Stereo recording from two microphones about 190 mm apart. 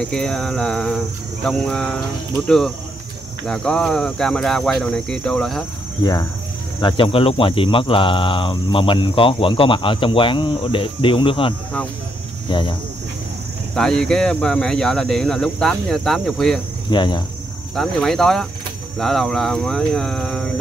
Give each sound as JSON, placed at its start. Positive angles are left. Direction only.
{"t": 0.0, "sound": "speech", "side_deg": 5}
{"t": 6.8, "sound": "speech", "side_deg": 25}
{"t": 13.7, "sound": "speech", "side_deg": 5}
{"t": 16.9, "sound": "speech", "side_deg": 25}
{"t": 17.7, "sound": "speech", "side_deg": 0}